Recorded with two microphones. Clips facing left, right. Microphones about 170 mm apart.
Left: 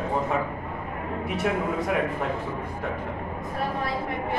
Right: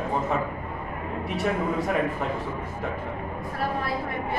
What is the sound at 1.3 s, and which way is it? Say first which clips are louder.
Speech: even; centre (ahead or behind).